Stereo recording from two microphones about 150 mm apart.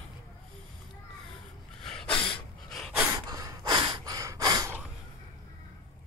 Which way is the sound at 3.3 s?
25° right (ahead or behind).